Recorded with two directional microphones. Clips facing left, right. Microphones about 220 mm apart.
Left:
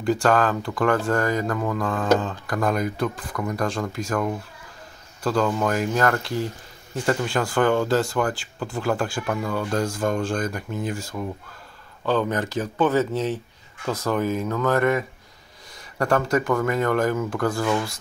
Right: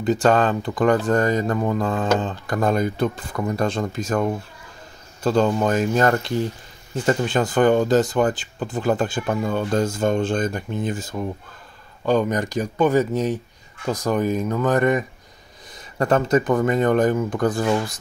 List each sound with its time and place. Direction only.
0.0 s speech: 20° right (ahead or behind)